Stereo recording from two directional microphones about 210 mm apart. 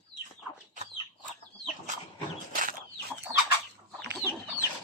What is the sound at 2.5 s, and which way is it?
Chicken, 40° right (ahead or behind).